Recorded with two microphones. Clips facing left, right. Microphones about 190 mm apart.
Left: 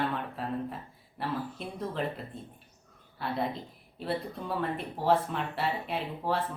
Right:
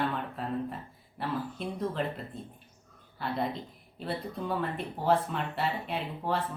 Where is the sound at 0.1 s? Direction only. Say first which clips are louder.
Even; centre (ahead or behind).